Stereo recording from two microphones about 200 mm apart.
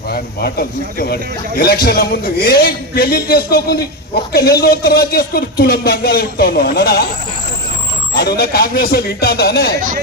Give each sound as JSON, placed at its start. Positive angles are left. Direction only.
{"t": 0.1, "sound": "a man's voice", "side_deg": 50}
{"t": 8.1, "sound": "a man's voice", "side_deg": 55}